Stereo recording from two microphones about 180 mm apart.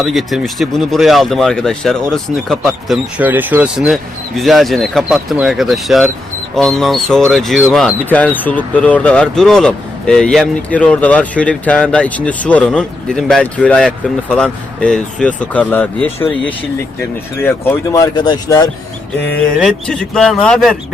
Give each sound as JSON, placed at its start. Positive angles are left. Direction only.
{"t": 0.0, "sound": "speech", "side_deg": 0}
{"t": 19.5, "sound": "speech", "side_deg": 5}